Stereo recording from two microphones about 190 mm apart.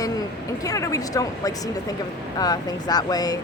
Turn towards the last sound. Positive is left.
turn(degrees=20)  # may be behind; listen again after turning